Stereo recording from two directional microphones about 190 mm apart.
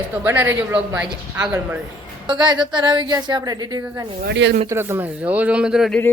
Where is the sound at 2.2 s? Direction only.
20° right (ahead or behind).